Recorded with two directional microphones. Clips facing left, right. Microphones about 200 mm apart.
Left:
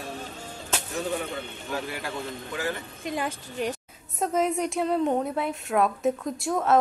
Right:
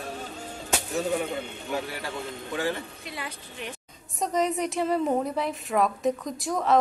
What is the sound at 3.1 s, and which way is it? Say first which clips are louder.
Speech: left 8 dB; 45° left (ahead or behind).